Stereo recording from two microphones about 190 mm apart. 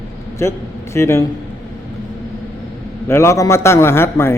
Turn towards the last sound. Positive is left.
turn(degrees=15)  # may be behind; listen again after turning